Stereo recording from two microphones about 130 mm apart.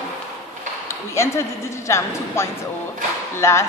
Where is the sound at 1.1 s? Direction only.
20° left (ahead or behind).